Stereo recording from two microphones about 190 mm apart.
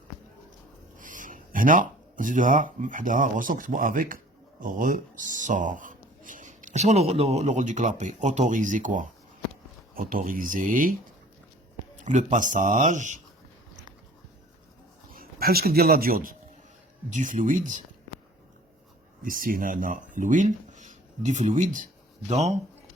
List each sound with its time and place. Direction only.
0.9 s speech: 45° right (ahead or behind)
12.0 s speech: 40° right (ahead or behind)
15.1 s a man's voice: 50° right (ahead or behind)
19.2 s speech: 45° right (ahead or behind)